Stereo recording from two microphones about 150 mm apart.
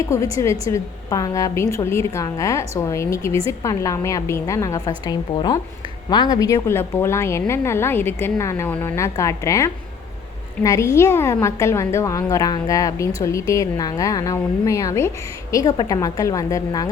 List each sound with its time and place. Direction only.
0.0 s a woman's voice: 20° left (ahead or behind)